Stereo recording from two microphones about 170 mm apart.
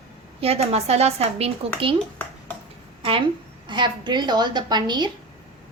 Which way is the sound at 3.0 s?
30° right (ahead or behind).